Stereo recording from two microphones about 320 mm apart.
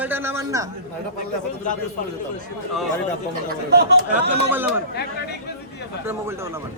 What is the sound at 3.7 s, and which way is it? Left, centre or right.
Speech, right.